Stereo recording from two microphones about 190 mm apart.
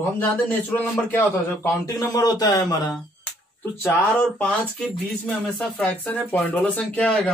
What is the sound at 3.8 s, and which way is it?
A man's voice, 5° left (ahead or behind).